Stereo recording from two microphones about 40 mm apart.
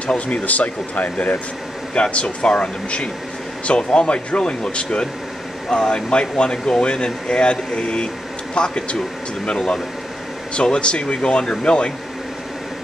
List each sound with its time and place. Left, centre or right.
0.3 s speech: left